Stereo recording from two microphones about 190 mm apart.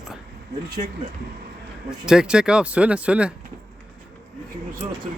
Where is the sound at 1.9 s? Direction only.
5° right (ahead or behind).